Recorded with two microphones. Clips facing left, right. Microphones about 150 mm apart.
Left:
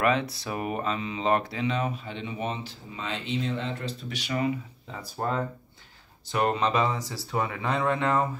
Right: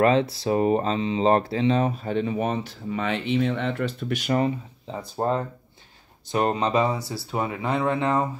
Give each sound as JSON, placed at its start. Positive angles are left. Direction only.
{"t": 0.0, "sound": "speech", "side_deg": -30}
{"t": 2.9, "sound": "speech", "side_deg": -65}
{"t": 4.9, "sound": "speech", "side_deg": -25}